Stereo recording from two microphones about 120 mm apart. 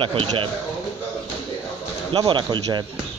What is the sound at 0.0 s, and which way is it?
Speech, 50° right (ahead or behind).